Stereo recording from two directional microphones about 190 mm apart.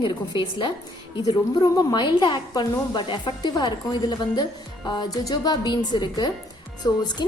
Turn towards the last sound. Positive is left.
turn(degrees=20)  # may be behind; listen again after turning